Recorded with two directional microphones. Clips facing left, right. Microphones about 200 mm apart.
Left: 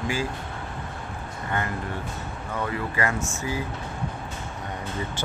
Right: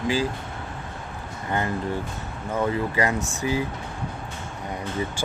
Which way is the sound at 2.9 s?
20° right (ahead or behind).